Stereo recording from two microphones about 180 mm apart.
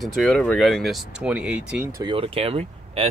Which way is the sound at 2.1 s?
30° right (ahead or behind).